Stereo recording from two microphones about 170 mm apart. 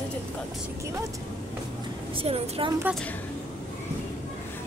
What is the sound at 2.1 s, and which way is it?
Speech, 35° right (ahead or behind).